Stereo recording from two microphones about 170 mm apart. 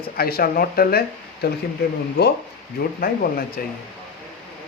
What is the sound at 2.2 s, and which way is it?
Speech, 75° left (ahead or behind).